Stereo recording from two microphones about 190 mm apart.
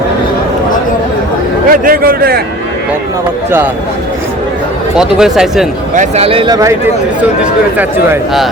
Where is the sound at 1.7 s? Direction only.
50° right (ahead or behind).